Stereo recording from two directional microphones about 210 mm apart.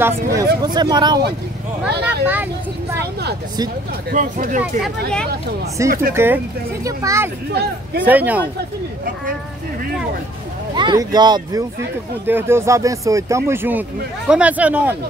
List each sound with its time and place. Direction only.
0.3 s speech: 15° right (ahead or behind)
1.9 s speech: 50° right (ahead or behind)
2.2 s speech: 10° right (ahead or behind)
3.0 s speech: 50° right (ahead or behind)
4.1 s speech: 40° right (ahead or behind)
4.8 s speech: 5° left (ahead or behind)
5.8 s speech: 15° right (ahead or behind)
8.5 s speech: 45° right (ahead or behind)
10.7 s speech: 20° right (ahead or behind)